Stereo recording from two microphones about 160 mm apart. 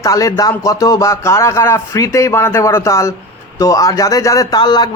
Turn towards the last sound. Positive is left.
turn(degrees=25)  # may be behind; listen again after turning